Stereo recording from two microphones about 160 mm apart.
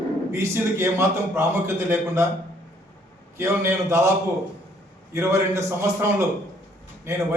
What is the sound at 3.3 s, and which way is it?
Speech, 15° right (ahead or behind).